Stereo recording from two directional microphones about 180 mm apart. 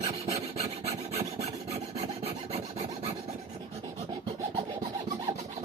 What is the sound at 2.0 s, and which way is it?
Filing, 35° right (ahead or behind).